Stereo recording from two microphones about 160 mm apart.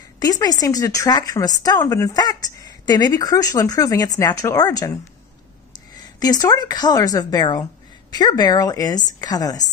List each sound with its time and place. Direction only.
0.2 s speech: 25° left (ahead or behind)
5.9 s speech: 25° left (ahead or behind)